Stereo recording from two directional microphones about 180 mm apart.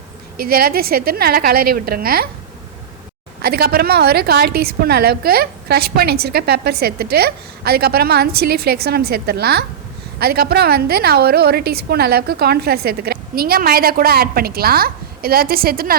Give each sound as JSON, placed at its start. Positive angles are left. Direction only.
{"t": 0.3, "sound": "a woman's voice", "side_deg": -55}
{"t": 3.4, "sound": "a woman's voice", "side_deg": -55}